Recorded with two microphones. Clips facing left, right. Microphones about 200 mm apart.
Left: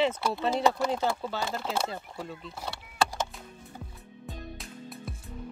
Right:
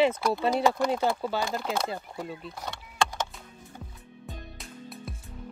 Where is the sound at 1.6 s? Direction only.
5° left (ahead or behind).